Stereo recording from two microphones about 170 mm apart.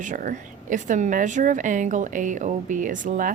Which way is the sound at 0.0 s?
50° right (ahead or behind).